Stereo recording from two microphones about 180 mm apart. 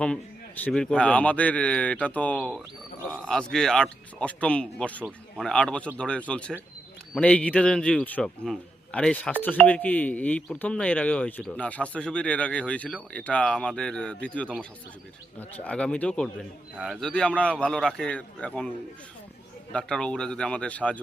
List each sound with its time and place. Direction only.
0.0 s a man's voice: 5° left (ahead or behind)
19.7 s speech: 5° left (ahead or behind)